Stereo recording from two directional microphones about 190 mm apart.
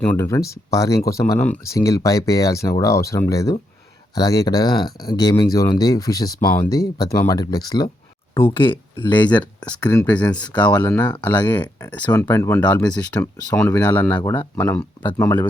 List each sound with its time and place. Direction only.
0.0 s speech: 10° left (ahead or behind)
9.3 s speech: 5° left (ahead or behind)
14.2 s speech: 25° left (ahead or behind)
14.5 s speech: 10° left (ahead or behind)